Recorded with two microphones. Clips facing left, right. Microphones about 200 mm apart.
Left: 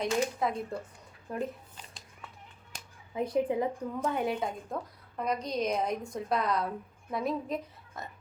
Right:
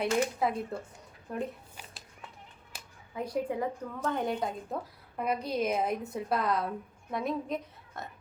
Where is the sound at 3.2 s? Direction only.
20° left (ahead or behind).